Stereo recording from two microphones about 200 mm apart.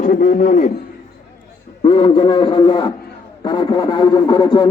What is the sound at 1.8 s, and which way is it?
Speech, 30° left (ahead or behind).